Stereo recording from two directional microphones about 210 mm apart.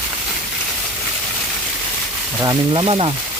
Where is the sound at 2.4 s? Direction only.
25° right (ahead or behind).